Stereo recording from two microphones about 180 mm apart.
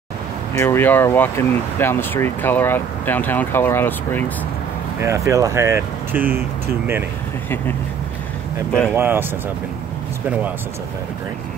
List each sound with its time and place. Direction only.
0.6 s speech: 15° left (ahead or behind)
5.0 s speech: 15° right (ahead or behind)
7.4 s speech: 10° left (ahead or behind)
8.9 s speech: 10° right (ahead or behind)